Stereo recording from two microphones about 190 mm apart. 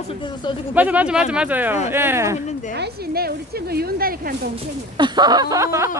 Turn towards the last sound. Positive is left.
turn(degrees=-15)  # may be behind; listen again after turning